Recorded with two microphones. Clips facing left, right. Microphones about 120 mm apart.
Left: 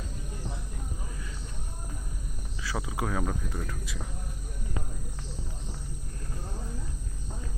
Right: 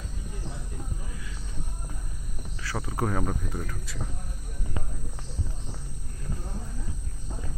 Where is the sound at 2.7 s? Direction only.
5° left (ahead or behind).